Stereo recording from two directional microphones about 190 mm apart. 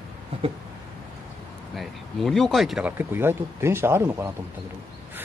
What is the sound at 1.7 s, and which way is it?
Speech, centre (ahead or behind).